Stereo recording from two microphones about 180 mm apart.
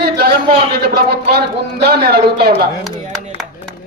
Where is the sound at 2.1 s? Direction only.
60° right (ahead or behind).